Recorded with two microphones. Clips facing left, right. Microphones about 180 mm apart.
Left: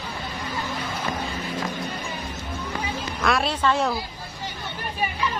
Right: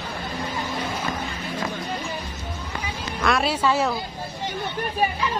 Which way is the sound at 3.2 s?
Centre (ahead or behind).